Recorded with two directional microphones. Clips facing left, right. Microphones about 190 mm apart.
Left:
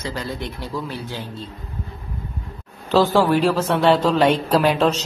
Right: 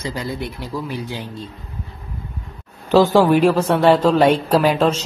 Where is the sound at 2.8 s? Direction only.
15° right (ahead or behind).